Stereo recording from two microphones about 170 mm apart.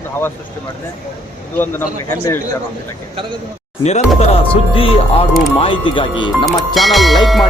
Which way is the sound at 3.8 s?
40° left (ahead or behind).